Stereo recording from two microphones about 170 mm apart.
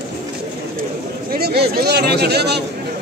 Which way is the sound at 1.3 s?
70° right (ahead or behind).